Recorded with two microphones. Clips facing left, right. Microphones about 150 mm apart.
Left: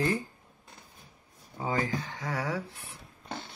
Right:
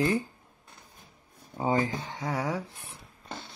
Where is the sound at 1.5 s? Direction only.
25° right (ahead or behind).